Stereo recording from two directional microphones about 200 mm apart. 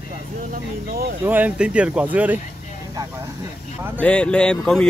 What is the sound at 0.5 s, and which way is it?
Speech, 50° right (ahead or behind).